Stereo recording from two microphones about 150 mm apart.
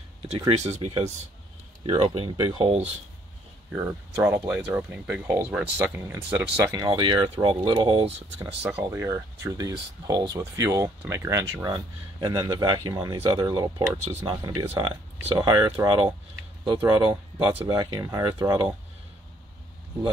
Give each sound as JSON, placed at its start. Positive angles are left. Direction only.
{"t": 0.5, "sound": "speech", "side_deg": -45}
{"t": 1.8, "sound": "speech", "side_deg": -35}
{"t": 3.7, "sound": "speech", "side_deg": -15}
{"t": 6.7, "sound": "speech", "side_deg": -30}
{"t": 8.8, "sound": "speech", "side_deg": -20}
{"t": 14.4, "sound": "speech", "side_deg": -20}
{"t": 14.8, "sound": "speech", "side_deg": -35}
{"t": 17.5, "sound": "speech", "side_deg": -40}
{"t": 17.7, "sound": "speech", "side_deg": -25}